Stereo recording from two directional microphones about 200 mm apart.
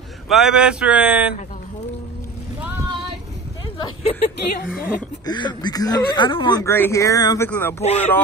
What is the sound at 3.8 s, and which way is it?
Speech, 20° left (ahead or behind).